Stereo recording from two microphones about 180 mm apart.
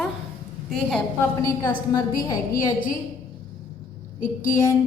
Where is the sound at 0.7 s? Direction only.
Centre (ahead or behind).